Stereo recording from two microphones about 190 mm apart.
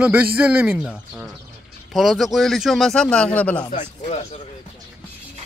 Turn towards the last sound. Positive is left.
turn(degrees=35)  # may be behind; listen again after turning